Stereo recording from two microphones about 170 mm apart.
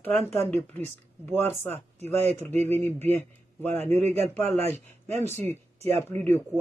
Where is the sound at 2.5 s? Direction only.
40° right (ahead or behind).